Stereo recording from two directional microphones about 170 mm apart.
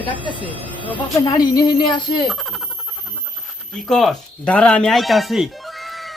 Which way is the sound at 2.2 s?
Centre (ahead or behind).